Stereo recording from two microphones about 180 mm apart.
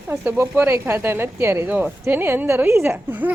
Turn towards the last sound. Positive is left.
turn(degrees=-10)  # may be behind; listen again after turning